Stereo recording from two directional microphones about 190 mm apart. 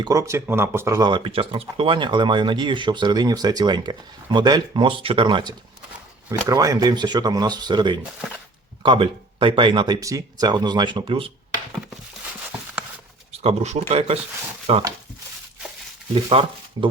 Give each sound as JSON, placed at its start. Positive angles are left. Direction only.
{"t": 0.0, "sound": "speech", "side_deg": -15}
{"t": 12.5, "sound": "a sound", "side_deg": -5}
{"t": 13.4, "sound": "speech", "side_deg": -35}
{"t": 16.1, "sound": "speech", "side_deg": -30}